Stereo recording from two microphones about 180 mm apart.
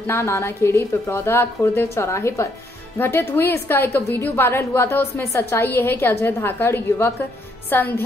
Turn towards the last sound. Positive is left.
turn(degrees=10)  # may be behind; listen again after turning